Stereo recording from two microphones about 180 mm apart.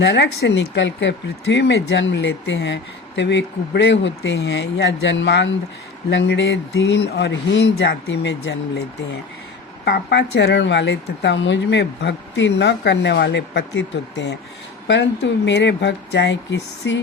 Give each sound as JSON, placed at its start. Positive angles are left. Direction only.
{"t": 0.0, "sound": "speech", "side_deg": 70}
{"t": 9.8, "sound": "speech", "side_deg": 65}
{"t": 14.8, "sound": "speech", "side_deg": 85}